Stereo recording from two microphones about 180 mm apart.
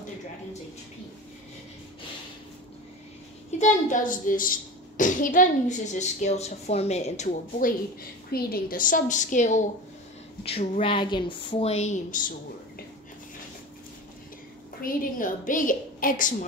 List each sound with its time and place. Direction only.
3.5 s a woman's voice: 45° left (ahead or behind)
8.3 s a woman's voice: 60° left (ahead or behind)
14.8 s a woman's voice: 50° left (ahead or behind)